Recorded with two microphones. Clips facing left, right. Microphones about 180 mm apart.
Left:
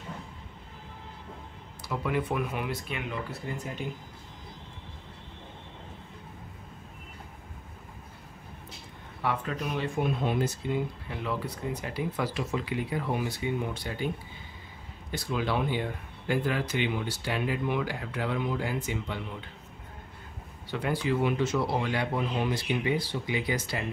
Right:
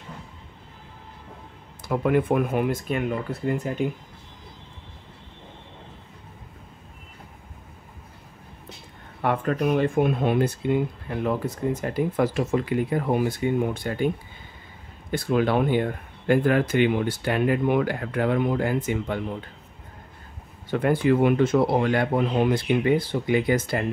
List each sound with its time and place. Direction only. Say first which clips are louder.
1.9 s speech: right 8 dB; 50° right (ahead or behind)
9.2 s speech: right 8 dB; 55° right (ahead or behind)
20.7 s speech: right 8 dB; 55° right (ahead or behind)